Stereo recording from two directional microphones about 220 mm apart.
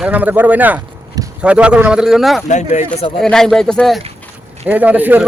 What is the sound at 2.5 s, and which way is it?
Speech, 30° left (ahead or behind).